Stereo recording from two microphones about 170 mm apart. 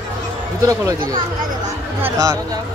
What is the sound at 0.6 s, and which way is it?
Speech, 20° right (ahead or behind).